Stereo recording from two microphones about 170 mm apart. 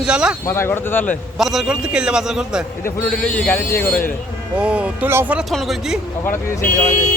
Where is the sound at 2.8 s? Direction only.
5° left (ahead or behind).